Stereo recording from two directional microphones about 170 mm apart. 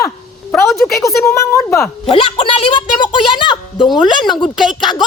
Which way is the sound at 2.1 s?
30° left (ahead or behind).